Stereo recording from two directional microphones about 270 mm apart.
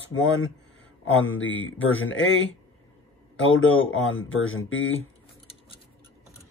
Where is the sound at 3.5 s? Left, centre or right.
Left.